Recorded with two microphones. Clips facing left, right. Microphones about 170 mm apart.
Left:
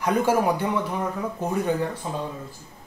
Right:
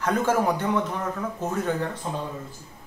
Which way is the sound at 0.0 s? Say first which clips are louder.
Left 2 dB; 10° left (ahead or behind).